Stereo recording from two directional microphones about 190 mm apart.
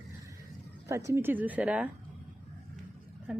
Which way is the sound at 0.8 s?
15° right (ahead or behind).